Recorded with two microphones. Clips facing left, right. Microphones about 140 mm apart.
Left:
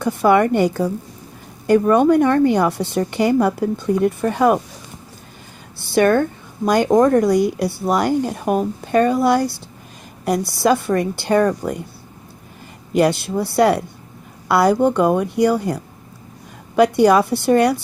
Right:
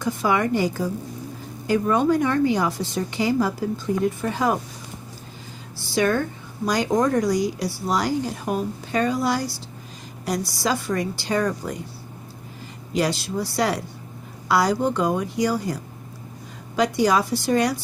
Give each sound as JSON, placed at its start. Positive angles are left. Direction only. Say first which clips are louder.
{"t": 0.0, "sound": "speech", "louder": "left 7 dB", "side_deg": 60}
{"t": 5.8, "sound": "speech", "louder": "left 7 dB", "side_deg": 55}
{"t": 12.9, "sound": "speech", "louder": "left 7 dB", "side_deg": 55}